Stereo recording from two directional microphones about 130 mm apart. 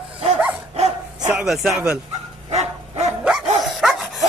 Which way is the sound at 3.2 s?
5° right (ahead or behind).